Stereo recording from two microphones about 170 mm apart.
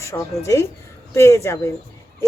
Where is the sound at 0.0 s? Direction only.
15° left (ahead or behind).